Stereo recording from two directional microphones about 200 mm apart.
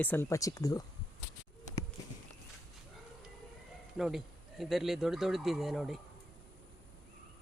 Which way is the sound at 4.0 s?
Centre (ahead or behind).